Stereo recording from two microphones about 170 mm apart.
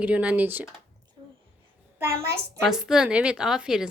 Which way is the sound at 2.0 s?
15° right (ahead or behind).